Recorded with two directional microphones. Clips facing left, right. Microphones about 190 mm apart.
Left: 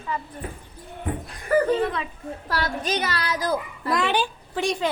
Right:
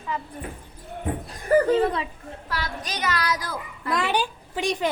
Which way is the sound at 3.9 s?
10° right (ahead or behind).